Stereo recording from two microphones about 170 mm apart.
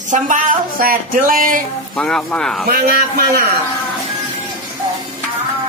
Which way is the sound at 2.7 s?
60° right (ahead or behind).